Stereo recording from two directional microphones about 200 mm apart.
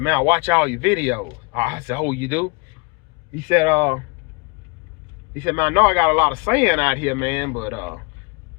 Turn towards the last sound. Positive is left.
turn(degrees=-10)  # may be behind; listen again after turning